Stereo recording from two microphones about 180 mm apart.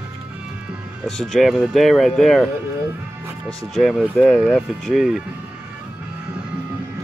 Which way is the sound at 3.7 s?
Centre (ahead or behind).